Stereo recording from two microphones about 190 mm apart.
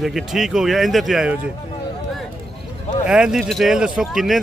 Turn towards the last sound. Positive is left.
turn(degrees=0)  # may be behind; listen again after turning